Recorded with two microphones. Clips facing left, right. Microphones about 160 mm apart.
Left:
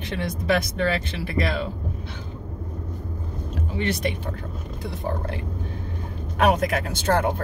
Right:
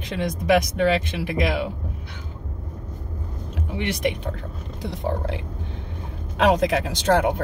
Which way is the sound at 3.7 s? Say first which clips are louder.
Right 1 dB; 15° right (ahead or behind).